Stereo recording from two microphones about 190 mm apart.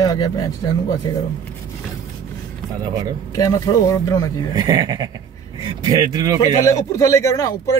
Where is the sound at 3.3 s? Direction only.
20° left (ahead or behind).